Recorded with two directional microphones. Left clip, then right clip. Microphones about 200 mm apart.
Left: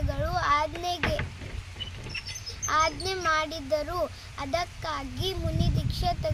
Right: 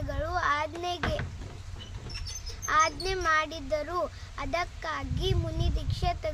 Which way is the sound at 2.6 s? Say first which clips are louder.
Even; 25° right (ahead or behind).